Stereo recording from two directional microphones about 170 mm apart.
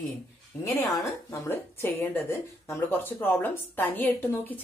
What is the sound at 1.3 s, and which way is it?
A woman's voice, 15° left (ahead or behind).